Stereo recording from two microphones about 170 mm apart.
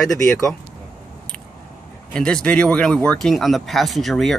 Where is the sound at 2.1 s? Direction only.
5° left (ahead or behind).